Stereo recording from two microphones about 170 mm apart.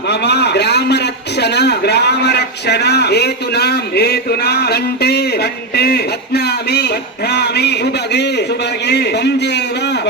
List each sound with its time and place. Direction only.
0.1 s a man's voice: 75° left (ahead or behind)